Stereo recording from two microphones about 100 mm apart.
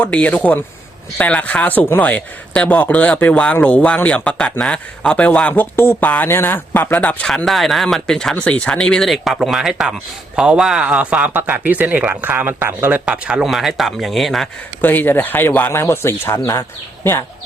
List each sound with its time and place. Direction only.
0.0 s speech: 10° left (ahead or behind); by 13.0 s 20° right (ahead or behind)
13.1 s speech: 10° right (ahead or behind)
14.8 s speech: 20° left (ahead or behind)